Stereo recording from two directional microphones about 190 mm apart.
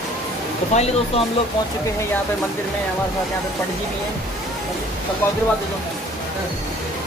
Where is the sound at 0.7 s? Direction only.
35° left (ahead or behind).